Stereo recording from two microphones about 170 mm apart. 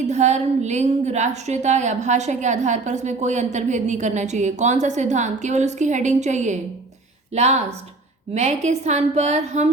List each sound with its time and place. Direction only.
0.0 s a woman's voice: 45° right (ahead or behind)